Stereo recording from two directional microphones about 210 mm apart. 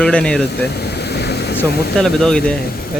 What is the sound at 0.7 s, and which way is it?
Vehicle, 50° left (ahead or behind).